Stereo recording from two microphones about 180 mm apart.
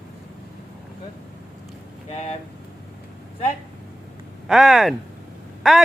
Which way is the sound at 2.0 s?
35° left (ahead or behind).